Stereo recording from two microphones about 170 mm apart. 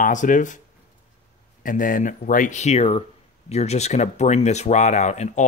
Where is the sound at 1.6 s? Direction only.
55° left (ahead or behind).